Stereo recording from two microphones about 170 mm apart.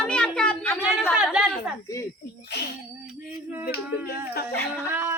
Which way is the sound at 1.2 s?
5° right (ahead or behind).